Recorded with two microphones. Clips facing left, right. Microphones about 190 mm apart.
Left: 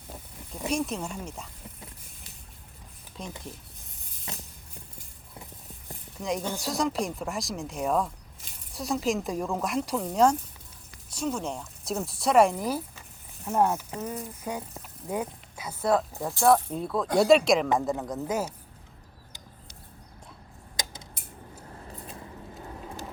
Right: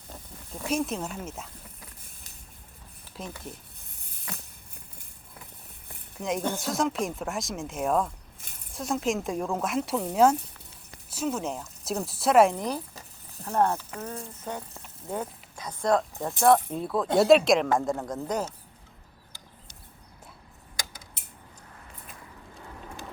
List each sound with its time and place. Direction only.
0.7 s speech: centre (ahead or behind)
3.2 s speech: 5° right (ahead or behind)
4.3 s music: 25° left (ahead or behind)
6.1 s speech: centre (ahead or behind)